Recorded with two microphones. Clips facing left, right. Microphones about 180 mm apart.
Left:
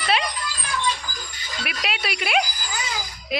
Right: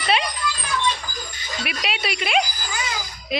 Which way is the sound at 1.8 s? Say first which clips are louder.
Even; centre (ahead or behind).